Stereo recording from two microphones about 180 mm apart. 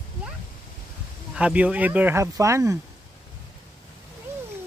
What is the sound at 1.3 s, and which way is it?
Speech, 5° right (ahead or behind).